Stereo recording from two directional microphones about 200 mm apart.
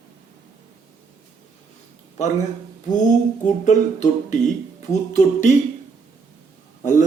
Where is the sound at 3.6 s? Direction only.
35° left (ahead or behind).